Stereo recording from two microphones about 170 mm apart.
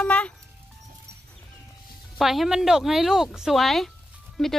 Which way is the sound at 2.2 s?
Centre (ahead or behind).